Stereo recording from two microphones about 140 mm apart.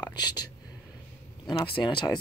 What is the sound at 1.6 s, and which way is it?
Speech, 35° left (ahead or behind).